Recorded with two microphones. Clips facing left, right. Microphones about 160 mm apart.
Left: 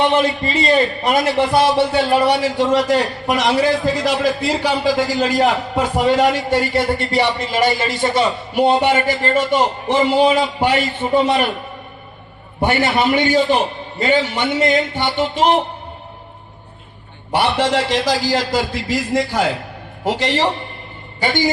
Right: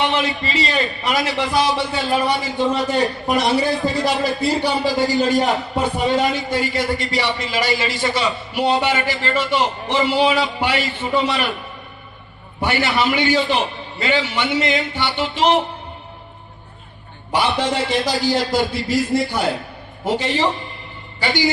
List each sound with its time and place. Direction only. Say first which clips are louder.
0.1 s a man's voice: left 5 dB; 50° left (ahead or behind)
12.6 s a man's voice: left 3 dB; 50° left (ahead or behind)
17.3 s a man's voice: left 3 dB; 70° left (ahead or behind)
21.2 s a man's voice: left 2 dB; 50° left (ahead or behind)